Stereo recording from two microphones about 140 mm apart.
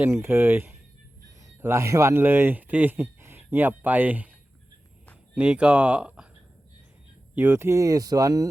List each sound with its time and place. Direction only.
0.0 s speech: 15° right (ahead or behind)
5.3 s speech: 5° right (ahead or behind)
7.3 s speech: 15° right (ahead or behind)